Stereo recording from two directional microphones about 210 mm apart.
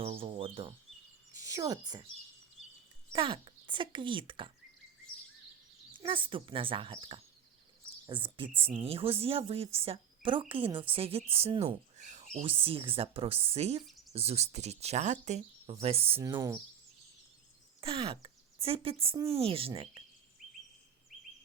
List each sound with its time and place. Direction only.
0.0 s speech: 25° right (ahead or behind)
1.4 s speech: 15° right (ahead or behind)
3.1 s a woman's voice: 25° right (ahead or behind)
6.0 s a woman's voice: 25° right (ahead or behind)
16.2 s speech: 15° right (ahead or behind)
17.7 s a woman's voice: 25° right (ahead or behind)